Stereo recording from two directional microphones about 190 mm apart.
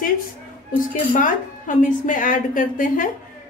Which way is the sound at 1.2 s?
45° left (ahead or behind).